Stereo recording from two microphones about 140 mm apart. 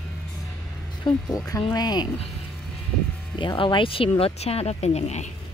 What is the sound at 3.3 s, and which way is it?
A woman's voice, 35° left (ahead or behind).